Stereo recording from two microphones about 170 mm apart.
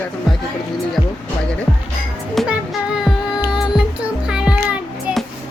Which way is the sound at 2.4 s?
Centre (ahead or behind).